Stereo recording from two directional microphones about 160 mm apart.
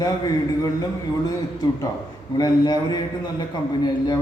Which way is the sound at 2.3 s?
25° left (ahead or behind).